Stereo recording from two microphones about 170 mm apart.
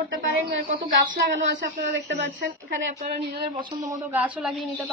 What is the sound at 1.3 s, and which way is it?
Speech, 90° right.